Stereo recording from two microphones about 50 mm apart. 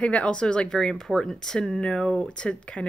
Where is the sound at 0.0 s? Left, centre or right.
Left.